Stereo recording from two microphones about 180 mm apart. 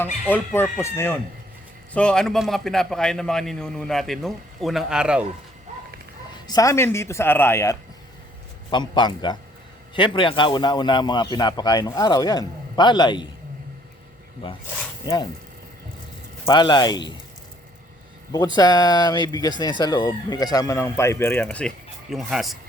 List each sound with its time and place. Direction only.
0.0 s a man's voice: 10° left (ahead or behind); by 5.2 s 5° right (ahead or behind)
6.5 s speech: 20° left (ahead or behind)
14.4 s speech: 30° left (ahead or behind)
16.5 s speech: 25° left (ahead or behind)
18.3 s a man's voice: 20° left (ahead or behind); by 22.5 s centre (ahead or behind)